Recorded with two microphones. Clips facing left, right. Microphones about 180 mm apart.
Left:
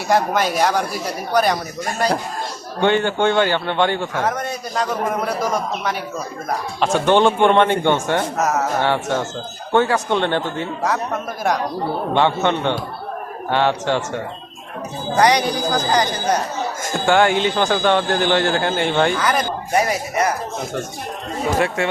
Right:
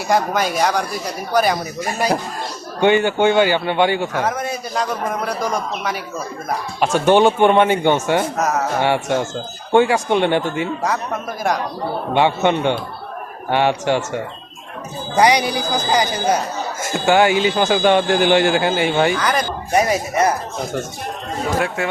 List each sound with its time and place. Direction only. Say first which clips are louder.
0.1 s a man's voice: even; centre (ahead or behind)
6.7 s a man's voice: right 2 dB; 10° right (ahead or behind)
8.4 s a man's voice: even; centre (ahead or behind)
8.8 s a man's voice: right 2 dB; 10° right (ahead or behind)
10.8 s a man's voice: even; centre (ahead or behind)
12.1 s a man's voice: right 2 dB; 10° right (ahead or behind)
19.7 s speech: right 3 dB; 25° right (ahead or behind)